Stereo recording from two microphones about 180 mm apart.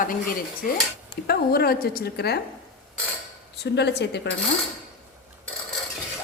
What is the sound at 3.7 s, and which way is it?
Speech, 70° left (ahead or behind).